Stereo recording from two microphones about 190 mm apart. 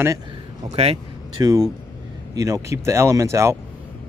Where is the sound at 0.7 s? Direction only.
30° right (ahead or behind).